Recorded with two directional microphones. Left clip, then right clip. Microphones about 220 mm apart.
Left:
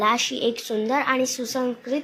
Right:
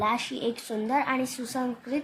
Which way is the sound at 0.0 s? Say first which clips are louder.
Left 6 dB; 5° left (ahead or behind).